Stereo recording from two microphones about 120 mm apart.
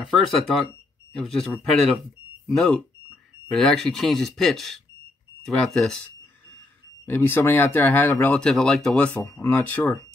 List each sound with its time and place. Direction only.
0.0 s speech: centre (ahead or behind)
7.1 s speech: 15° left (ahead or behind)